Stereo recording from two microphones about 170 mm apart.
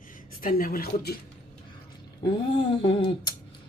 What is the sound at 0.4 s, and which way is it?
Speech, 60° left (ahead or behind).